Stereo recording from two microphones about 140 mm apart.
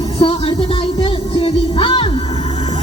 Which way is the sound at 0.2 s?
40° left (ahead or behind).